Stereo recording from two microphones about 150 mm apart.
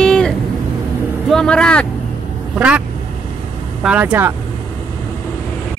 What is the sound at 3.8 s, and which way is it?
Speech, 10° right (ahead or behind).